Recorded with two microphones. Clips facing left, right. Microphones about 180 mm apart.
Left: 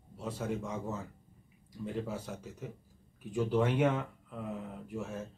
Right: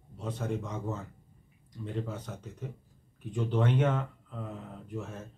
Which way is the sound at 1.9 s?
5° left (ahead or behind).